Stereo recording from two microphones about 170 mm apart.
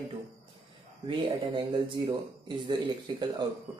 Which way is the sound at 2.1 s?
30° right (ahead or behind).